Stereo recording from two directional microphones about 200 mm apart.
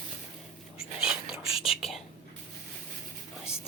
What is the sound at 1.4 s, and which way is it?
Whispering, 30° left (ahead or behind).